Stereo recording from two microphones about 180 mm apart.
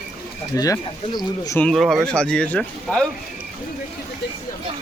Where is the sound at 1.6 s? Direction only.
5° left (ahead or behind).